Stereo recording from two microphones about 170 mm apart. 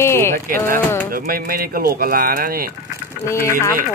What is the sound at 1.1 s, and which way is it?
Speech, 60° right (ahead or behind).